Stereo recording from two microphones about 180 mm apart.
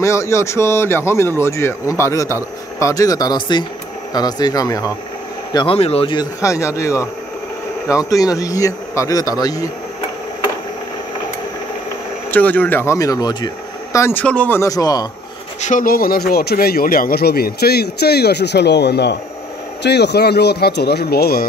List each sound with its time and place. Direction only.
0.0 s a man's voice: 15° left (ahead or behind)
6.4 s a man's voice: 15° left (ahead or behind)
12.3 s a man's voice: 10° left (ahead or behind)
13.9 s a man's voice: 10° left (ahead or behind)
15.6 s speech: 50° left (ahead or behind)